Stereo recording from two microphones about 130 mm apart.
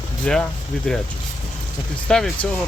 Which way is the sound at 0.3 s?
5° left (ahead or behind).